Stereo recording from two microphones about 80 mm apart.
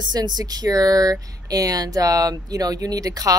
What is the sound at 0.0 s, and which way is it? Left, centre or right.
A woman's voice, right.